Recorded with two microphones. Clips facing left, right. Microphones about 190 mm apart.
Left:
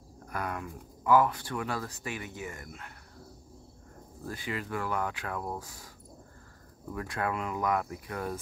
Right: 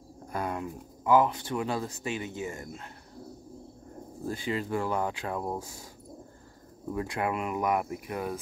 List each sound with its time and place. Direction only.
0.3 s speech: 25° right (ahead or behind)
4.2 s speech: 25° right (ahead or behind)
6.9 s speech: 20° right (ahead or behind)